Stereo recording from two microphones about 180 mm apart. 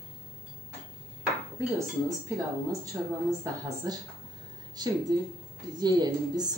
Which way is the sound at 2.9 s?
10° right (ahead or behind).